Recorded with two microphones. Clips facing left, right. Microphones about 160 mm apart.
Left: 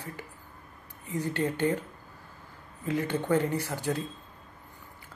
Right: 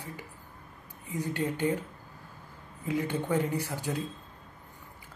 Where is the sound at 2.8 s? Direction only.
10° right (ahead or behind).